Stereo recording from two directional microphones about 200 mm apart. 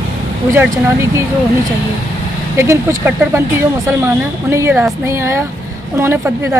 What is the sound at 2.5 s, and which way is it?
Speech, 15° right (ahead or behind).